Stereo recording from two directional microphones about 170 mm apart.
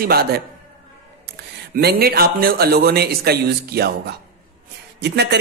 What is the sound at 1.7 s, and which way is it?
Speech, 65° right (ahead or behind).